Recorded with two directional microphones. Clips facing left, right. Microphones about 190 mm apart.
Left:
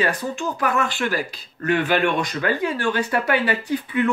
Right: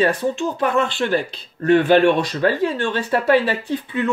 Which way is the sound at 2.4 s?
25° right (ahead or behind).